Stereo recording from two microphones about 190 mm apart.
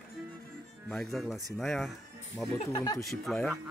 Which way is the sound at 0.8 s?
Centre (ahead or behind).